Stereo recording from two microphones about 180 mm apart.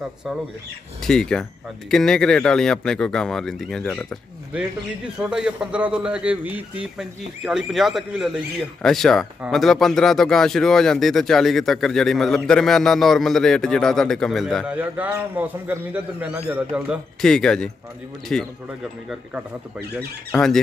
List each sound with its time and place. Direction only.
1.0 s speech: 5° left (ahead or behind)
14.7 s a man's voice: 10° right (ahead or behind)
17.2 s speech: 5° left (ahead or behind)
20.2 s speech: 5° left (ahead or behind)